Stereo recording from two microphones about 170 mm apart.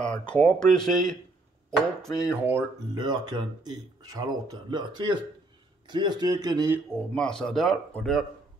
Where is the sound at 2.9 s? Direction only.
25° right (ahead or behind).